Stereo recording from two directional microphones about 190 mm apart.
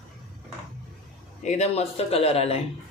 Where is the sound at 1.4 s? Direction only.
35° left (ahead or behind).